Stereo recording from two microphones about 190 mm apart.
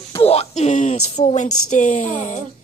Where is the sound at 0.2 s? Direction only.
30° left (ahead or behind).